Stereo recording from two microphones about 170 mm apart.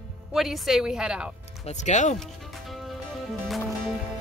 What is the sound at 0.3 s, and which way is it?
Speech, centre (ahead or behind).